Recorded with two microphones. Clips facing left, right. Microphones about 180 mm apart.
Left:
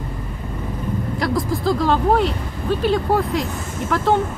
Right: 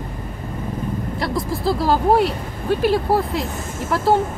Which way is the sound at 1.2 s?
Centre (ahead or behind).